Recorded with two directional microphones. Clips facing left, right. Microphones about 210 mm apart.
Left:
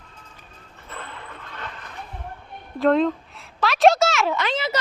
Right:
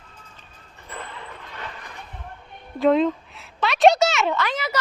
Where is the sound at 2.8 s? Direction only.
Centre (ahead or behind).